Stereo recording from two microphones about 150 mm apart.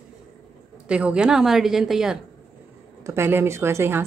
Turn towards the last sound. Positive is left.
turn(degrees=-15)  # may be behind; listen again after turning